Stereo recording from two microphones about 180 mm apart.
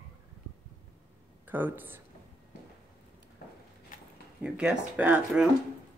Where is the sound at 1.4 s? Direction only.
10° right (ahead or behind).